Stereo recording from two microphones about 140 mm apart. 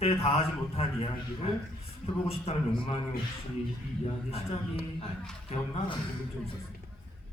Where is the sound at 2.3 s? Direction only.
45° left (ahead or behind).